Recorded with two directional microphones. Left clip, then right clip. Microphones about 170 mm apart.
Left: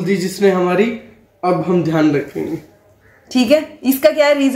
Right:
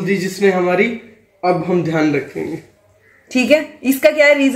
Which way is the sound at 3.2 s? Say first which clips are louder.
Even; 5° right (ahead or behind).